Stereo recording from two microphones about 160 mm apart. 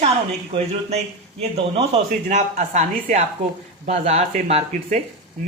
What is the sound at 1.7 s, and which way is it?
Speech, 40° right (ahead or behind).